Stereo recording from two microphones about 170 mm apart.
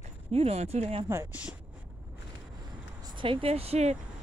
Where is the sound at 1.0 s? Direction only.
15° right (ahead or behind).